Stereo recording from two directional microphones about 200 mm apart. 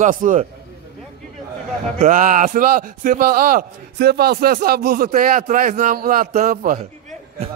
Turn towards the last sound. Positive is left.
turn(degrees=-40)  # may be behind; listen again after turning